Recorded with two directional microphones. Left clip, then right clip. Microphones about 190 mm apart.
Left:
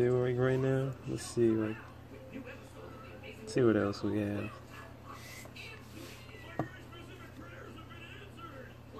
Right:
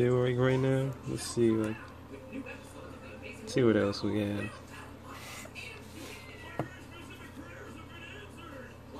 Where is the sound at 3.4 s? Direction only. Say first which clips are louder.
Right 2 dB; centre (ahead or behind).